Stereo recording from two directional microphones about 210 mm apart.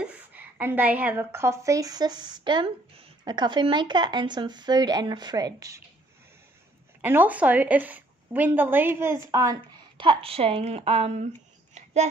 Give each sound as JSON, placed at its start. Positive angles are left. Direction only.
{"t": 0.0, "sound": "a woman's voice", "side_deg": -10}
{"t": 7.0, "sound": "a woman's voice", "side_deg": -10}
{"t": 11.7, "sound": "a sound", "side_deg": -30}